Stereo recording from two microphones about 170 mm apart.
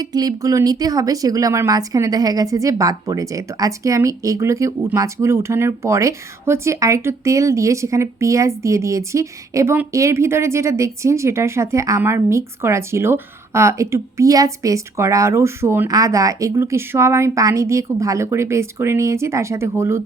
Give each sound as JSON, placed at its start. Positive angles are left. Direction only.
{"t": 0.0, "sound": "speech", "side_deg": -20}